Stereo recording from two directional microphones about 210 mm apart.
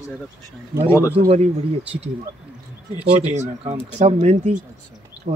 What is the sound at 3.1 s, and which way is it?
Speech, 30° right (ahead or behind).